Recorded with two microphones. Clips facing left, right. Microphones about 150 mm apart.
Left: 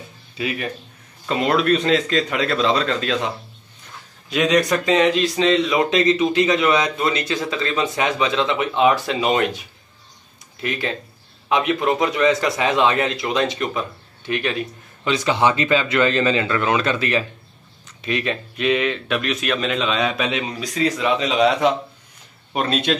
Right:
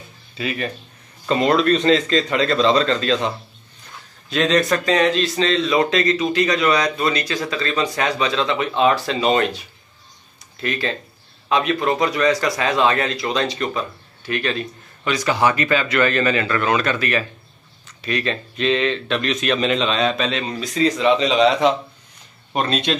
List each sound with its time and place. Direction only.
0.4 s speech: 10° left (ahead or behind)
4.3 s a man's voice: 10° left (ahead or behind)